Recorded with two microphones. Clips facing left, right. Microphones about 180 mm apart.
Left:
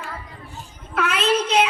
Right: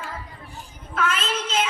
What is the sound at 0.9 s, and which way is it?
Speech, 70° left (ahead or behind).